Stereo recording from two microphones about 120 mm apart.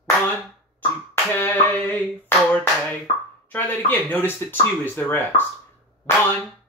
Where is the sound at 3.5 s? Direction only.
15° left (ahead or behind).